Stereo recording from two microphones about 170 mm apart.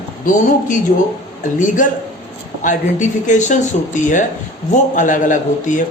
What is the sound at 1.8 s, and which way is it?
A man's voice, 50° left (ahead or behind).